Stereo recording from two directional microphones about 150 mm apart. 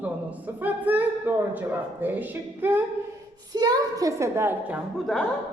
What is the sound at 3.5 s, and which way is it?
A woman's voice, 25° right (ahead or behind).